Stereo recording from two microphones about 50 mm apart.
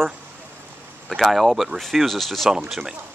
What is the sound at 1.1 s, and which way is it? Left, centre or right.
Speech, centre.